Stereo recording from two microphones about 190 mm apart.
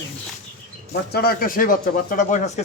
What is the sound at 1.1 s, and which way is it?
A man's voice, 50° left (ahead or behind).